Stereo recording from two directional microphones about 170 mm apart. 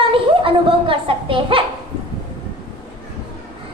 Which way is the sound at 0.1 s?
30° right (ahead or behind).